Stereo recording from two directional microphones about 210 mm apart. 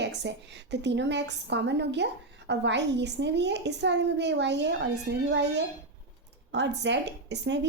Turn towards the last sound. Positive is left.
turn(degrees=-55)  # may be behind; listen again after turning